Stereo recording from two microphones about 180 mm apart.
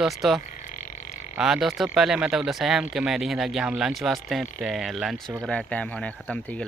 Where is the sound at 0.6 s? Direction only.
45° left (ahead or behind).